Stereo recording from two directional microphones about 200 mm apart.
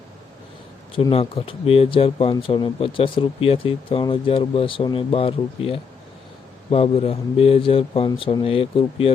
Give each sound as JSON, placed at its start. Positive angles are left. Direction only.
{"t": 0.9, "sound": "speech", "side_deg": 25}